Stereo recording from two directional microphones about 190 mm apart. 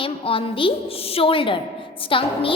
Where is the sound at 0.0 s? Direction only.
30° left (ahead or behind).